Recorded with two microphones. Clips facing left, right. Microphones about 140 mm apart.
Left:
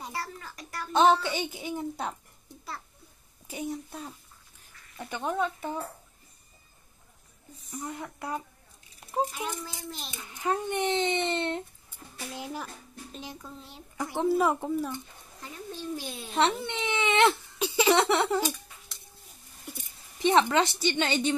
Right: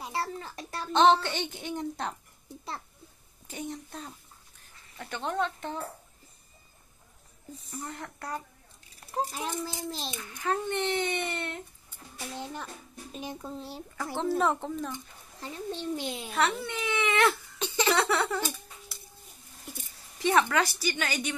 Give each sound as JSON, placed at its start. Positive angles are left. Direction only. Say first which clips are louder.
{"t": 0.1, "sound": "babbling", "louder": "right 4 dB", "side_deg": -25}
{"t": 1.2, "sound": "a woman's voice", "louder": "left 2 dB", "side_deg": 5}
{"t": 7.8, "sound": "speech", "louder": "left 4 dB", "side_deg": 10}
{"t": 9.3, "sound": "a child's voice", "louder": "right 2 dB", "side_deg": -30}
{"t": 10.1, "sound": "a child's voice", "louder": "left 3 dB", "side_deg": 20}
{"t": 12.4, "sound": "speech", "louder": "left 2 dB", "side_deg": 5}
{"t": 13.1, "sound": "a child's voice", "louder": "right 4 dB", "side_deg": -20}
{"t": 13.9, "sound": "speech", "louder": "left 3 dB", "side_deg": 15}
{"t": 15.4, "sound": "a child's voice", "louder": "right 3 dB", "side_deg": -25}
{"t": 16.3, "sound": "a child's voice", "louder": "left 3 dB", "side_deg": 25}
{"t": 17.6, "sound": "speech", "louder": "left 6 dB", "side_deg": 10}
{"t": 17.9, "sound": "a child's voice", "louder": "left 3 dB", "side_deg": 25}
{"t": 20.2, "sound": "a child's voice", "louder": "left 2 dB", "side_deg": 20}